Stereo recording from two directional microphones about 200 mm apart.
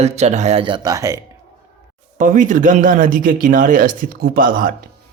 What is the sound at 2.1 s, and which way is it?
Speech, 40° right (ahead or behind).